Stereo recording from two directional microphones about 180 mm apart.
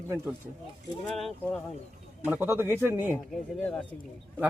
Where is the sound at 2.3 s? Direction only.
10° right (ahead or behind).